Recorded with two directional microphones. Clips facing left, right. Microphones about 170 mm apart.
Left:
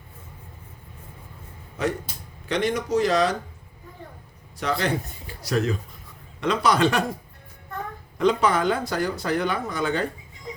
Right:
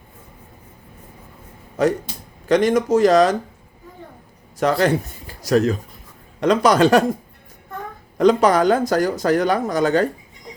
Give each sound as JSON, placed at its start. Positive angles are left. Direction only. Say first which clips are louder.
{"t": 1.8, "sound": "speech", "louder": "right 8 dB", "side_deg": -40}
{"t": 4.5, "sound": "speech", "louder": "right 8 dB", "side_deg": -45}
{"t": 8.2, "sound": "speech", "louder": "right 6 dB", "side_deg": -40}